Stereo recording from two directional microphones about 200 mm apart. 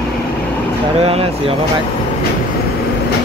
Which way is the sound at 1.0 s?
30° right (ahead or behind).